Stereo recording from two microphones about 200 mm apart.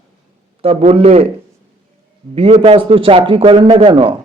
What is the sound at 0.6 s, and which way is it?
Speech, 30° right (ahead or behind).